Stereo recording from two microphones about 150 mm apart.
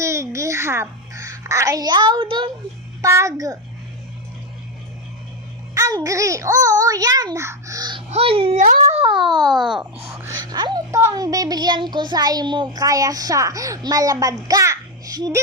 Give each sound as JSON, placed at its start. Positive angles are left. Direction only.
{"t": 0.0, "sound": "a child's voice", "side_deg": -20}
{"t": 3.0, "sound": "a child's voice", "side_deg": -20}
{"t": 5.7, "sound": "a child's voice", "side_deg": -20}
{"t": 8.1, "sound": "a child's voice", "side_deg": -40}
{"t": 8.5, "sound": "speech", "side_deg": -55}
{"t": 9.0, "sound": "a sound", "side_deg": 0}
{"t": 9.3, "sound": "a child's voice", "side_deg": -25}
{"t": 9.6, "sound": "a sound", "side_deg": -5}
{"t": 10.0, "sound": "a child's voice", "side_deg": -15}